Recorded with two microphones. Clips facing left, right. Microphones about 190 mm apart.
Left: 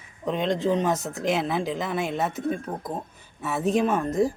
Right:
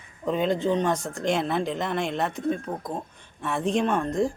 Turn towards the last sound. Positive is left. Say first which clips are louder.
# left 1 dB
turn(degrees=0)  # may be behind; listen again after turning